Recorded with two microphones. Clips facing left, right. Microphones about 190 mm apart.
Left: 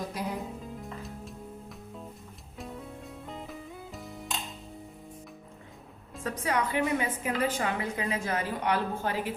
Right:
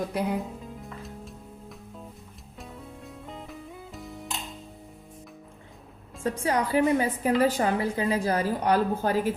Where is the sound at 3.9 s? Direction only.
Centre (ahead or behind).